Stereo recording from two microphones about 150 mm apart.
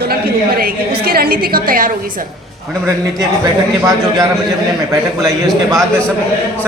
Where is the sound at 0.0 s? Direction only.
85° right.